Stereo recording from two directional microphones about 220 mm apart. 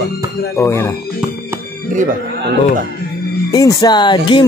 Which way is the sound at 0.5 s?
10° left (ahead or behind).